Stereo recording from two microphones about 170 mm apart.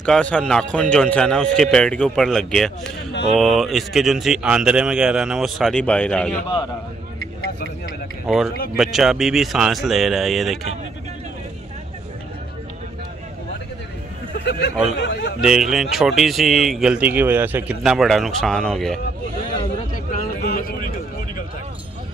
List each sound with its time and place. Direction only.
0.0 s speech: 5° left (ahead or behind)
8.7 s speech: centre (ahead or behind)
14.4 s speech: 90° left
15.4 s speech: centre (ahead or behind)
20.1 s a sound: 60° left (ahead or behind)